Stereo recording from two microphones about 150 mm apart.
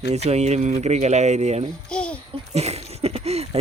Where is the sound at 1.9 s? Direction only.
5° left (ahead or behind).